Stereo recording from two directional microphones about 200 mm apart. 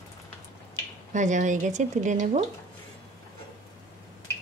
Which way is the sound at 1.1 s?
40° right (ahead or behind).